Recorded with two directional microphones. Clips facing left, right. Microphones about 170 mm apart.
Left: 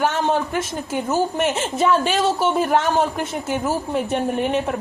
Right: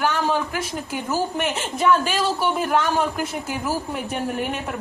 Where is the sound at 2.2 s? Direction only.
25° left (ahead or behind).